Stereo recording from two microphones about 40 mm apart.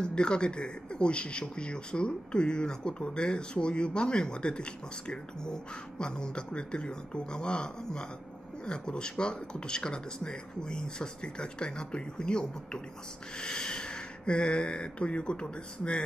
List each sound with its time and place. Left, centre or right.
0.0 s speech: left